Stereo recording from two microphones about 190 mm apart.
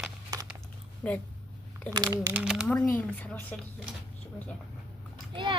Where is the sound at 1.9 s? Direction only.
20° right (ahead or behind).